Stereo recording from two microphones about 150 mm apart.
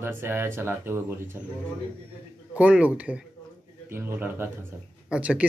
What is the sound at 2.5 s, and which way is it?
Speech, 10° right (ahead or behind).